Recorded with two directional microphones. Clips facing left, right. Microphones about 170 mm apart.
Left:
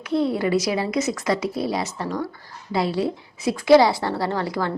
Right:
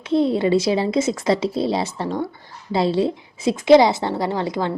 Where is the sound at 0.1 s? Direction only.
25° right (ahead or behind).